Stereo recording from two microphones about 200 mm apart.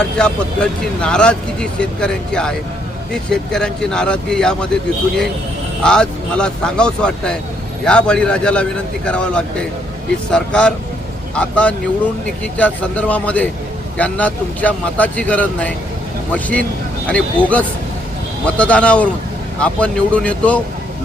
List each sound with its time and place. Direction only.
0.2 s speech: 5° left (ahead or behind)
5.8 s a man's voice: 5° left (ahead or behind)